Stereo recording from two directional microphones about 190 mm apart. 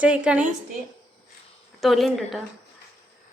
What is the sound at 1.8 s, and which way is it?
Speech, centre (ahead or behind).